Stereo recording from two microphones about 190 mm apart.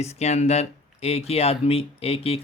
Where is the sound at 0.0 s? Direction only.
35° left (ahead or behind).